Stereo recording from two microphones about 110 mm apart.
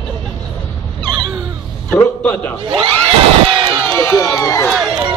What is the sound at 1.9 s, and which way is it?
Speech, 15° left (ahead or behind).